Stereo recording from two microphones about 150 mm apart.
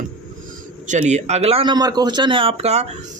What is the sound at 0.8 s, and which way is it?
Speech, 50° right (ahead or behind).